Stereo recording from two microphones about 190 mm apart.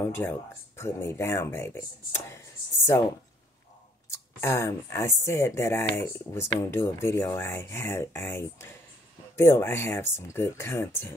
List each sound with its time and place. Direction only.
0.0 s speech: 15° left (ahead or behind)
4.1 s speech: 15° left (ahead or behind)